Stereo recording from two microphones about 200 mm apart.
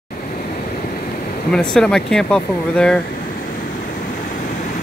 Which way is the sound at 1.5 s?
5° left (ahead or behind).